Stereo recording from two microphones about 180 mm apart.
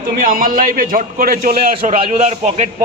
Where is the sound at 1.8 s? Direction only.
35° right (ahead or behind).